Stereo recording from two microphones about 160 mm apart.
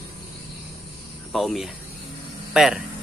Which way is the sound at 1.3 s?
Centre (ahead or behind).